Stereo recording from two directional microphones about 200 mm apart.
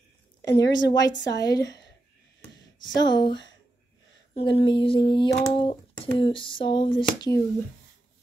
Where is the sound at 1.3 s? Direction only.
20° left (ahead or behind).